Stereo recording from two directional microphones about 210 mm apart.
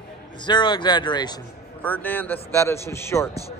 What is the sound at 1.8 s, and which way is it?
A man's voice, 10° left (ahead or behind).